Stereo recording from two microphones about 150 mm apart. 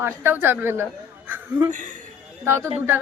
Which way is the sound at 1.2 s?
15° right (ahead or behind).